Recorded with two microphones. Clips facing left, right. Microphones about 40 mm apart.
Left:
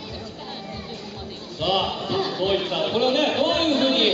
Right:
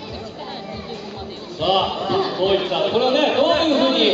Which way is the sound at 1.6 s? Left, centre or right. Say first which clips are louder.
Right 4 dB; centre.